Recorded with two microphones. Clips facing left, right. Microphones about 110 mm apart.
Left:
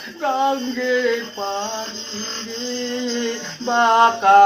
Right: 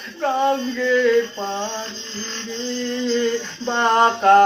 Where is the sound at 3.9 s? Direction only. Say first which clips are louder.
Left 1 dB; 5° left (ahead or behind).